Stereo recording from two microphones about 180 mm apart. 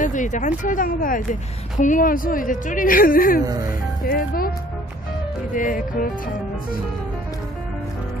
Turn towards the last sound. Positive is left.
turn(degrees=50)  # may be behind; listen again after turning